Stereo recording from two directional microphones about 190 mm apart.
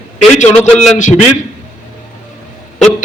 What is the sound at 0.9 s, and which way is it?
Speech, 40° left (ahead or behind).